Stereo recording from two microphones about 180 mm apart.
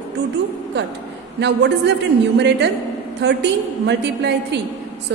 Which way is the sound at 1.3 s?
70° right (ahead or behind).